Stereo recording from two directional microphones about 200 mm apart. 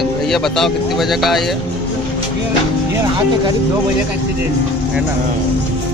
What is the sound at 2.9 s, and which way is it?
Music, 20° right (ahead or behind).